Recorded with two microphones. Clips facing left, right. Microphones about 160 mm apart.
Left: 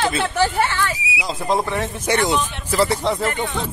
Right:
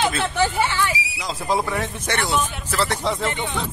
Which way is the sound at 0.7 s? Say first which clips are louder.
Even; 15° right (ahead or behind).